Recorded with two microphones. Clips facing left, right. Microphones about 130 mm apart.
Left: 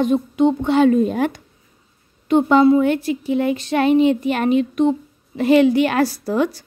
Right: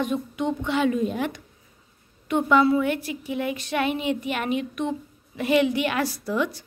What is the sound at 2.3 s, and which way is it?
A woman's voice, 30° left (ahead or behind).